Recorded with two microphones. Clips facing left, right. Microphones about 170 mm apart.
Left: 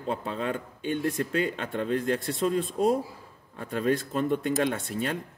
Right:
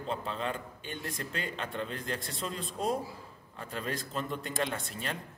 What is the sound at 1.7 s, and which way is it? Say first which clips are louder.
Speech: left 12 dB; 50° left (ahead or behind).